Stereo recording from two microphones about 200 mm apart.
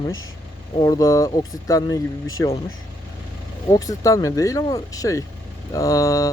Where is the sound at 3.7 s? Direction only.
15° left (ahead or behind).